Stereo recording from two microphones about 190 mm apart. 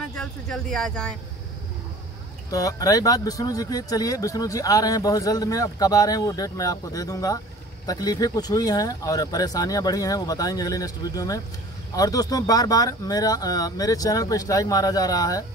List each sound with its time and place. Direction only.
0.1 s speech: 5° left (ahead or behind)
2.5 s speech: 20° left (ahead or behind)